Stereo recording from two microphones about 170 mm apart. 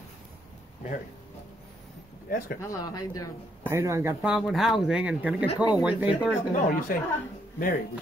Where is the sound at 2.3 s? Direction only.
65° left (ahead or behind).